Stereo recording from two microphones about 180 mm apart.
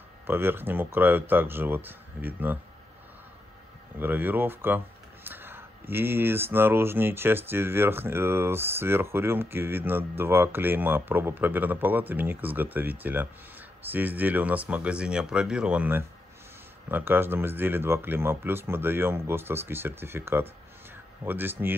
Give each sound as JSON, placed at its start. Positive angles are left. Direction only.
{"t": 0.3, "sound": "speech", "side_deg": -10}
{"t": 4.0, "sound": "speech", "side_deg": -10}